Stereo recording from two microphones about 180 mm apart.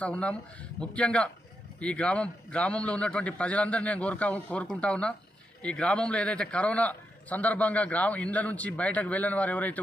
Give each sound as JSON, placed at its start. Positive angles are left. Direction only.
{"t": 0.0, "sound": "a man's voice", "side_deg": 5}